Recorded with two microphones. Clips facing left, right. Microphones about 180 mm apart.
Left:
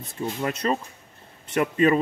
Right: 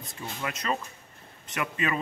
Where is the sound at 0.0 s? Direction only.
30° left (ahead or behind).